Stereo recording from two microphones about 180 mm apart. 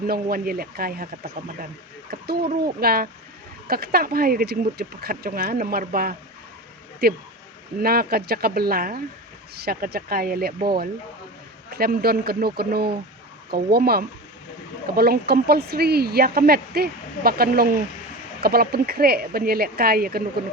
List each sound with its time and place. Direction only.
0.1 s speech: 55° right (ahead or behind)
11.7 s speech: 60° right (ahead or behind)